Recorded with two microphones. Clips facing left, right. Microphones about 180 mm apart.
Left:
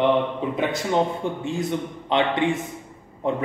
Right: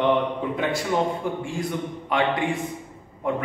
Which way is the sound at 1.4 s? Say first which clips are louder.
Left 2 dB; 25° left (ahead or behind).